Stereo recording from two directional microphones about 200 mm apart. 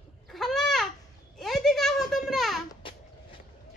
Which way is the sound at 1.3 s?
Centre (ahead or behind).